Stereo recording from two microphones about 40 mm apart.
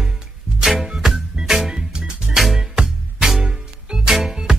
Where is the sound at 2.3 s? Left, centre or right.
Centre.